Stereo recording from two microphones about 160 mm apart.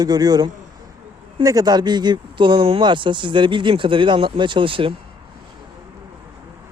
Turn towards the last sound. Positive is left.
turn(degrees=-30)  # may be behind; listen again after turning